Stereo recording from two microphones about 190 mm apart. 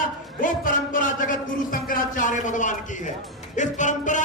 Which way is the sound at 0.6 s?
45° left (ahead or behind).